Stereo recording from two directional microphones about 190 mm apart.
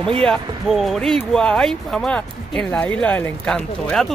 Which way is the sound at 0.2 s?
Centre (ahead or behind).